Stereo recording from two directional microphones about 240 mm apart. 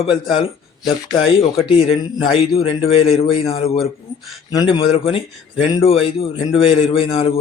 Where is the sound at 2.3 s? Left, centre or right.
Left.